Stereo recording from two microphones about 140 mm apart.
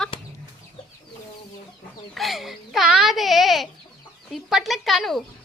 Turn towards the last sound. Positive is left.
turn(degrees=0)  # may be behind; listen again after turning